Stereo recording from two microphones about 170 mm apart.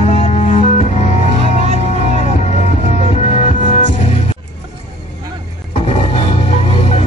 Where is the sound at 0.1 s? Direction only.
40° left (ahead or behind).